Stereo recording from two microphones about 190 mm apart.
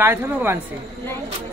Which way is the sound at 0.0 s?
10° right (ahead or behind).